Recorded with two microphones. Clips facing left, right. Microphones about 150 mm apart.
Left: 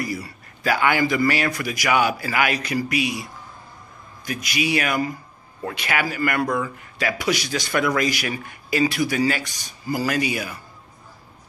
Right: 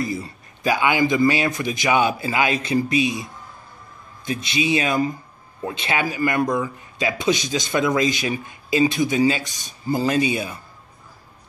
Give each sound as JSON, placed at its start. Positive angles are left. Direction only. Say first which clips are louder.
{"t": 0.0, "sound": "a man's voice", "louder": "right 2 dB", "side_deg": -25}